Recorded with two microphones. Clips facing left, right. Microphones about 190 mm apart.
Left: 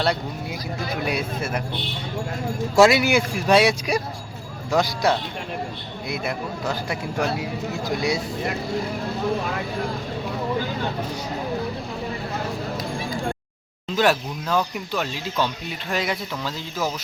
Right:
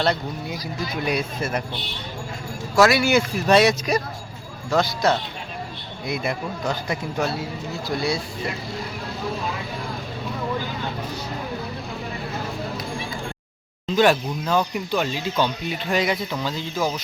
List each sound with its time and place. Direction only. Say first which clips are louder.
1.0 s speech: right 2 dB; 5° left (ahead or behind)
2.7 s speech: left 1 dB; 25° left (ahead or behind)
6.2 s speech: even; 5° left (ahead or behind)
7.9 s speech: even; 15° left (ahead or behind)
13.9 s speech: right 2 dB; centre (ahead or behind)